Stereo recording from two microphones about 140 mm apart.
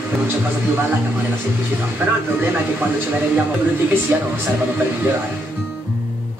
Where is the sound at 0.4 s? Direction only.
15° right (ahead or behind).